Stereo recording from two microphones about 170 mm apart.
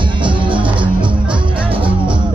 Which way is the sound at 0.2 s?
30° right (ahead or behind).